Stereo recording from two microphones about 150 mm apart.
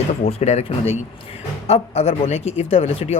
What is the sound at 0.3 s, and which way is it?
Speech, 45° left (ahead or behind).